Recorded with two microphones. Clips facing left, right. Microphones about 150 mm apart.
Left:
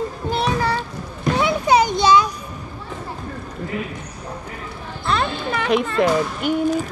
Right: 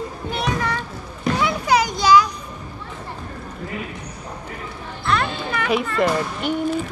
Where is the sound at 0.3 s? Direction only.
30° left (ahead or behind).